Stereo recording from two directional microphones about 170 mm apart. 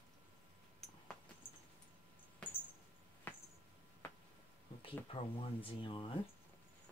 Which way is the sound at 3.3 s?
10° left (ahead or behind).